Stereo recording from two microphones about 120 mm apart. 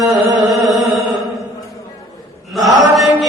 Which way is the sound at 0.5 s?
30° right (ahead or behind).